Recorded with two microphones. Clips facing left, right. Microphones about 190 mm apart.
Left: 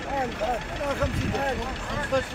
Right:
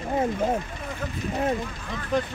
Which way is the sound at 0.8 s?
80° left.